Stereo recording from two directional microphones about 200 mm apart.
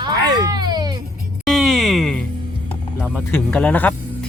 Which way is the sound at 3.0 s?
5° right (ahead or behind).